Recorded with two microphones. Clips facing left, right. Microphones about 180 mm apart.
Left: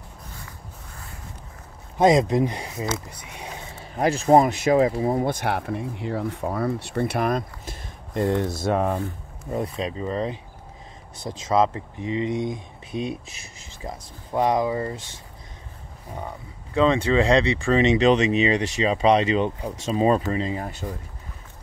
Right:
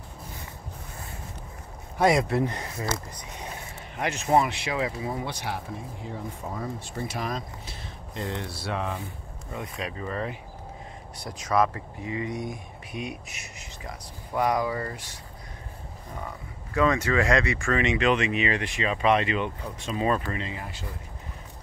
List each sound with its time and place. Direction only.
2.0 s speech: 20° left (ahead or behind)
3.9 s speech: 35° left (ahead or behind)
9.8 s speech: 25° left (ahead or behind)
16.7 s speech: 25° left (ahead or behind)